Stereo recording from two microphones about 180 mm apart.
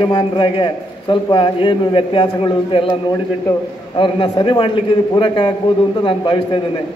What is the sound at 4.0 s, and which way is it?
A man's voice, 30° left (ahead or behind).